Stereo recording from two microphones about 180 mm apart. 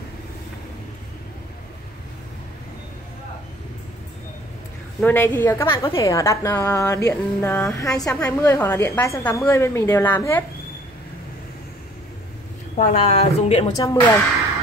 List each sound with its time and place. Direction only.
5.0 s speech: 10° left (ahead or behind)
12.7 s speech: 40° left (ahead or behind)
13.7 s speech: 20° left (ahead or behind)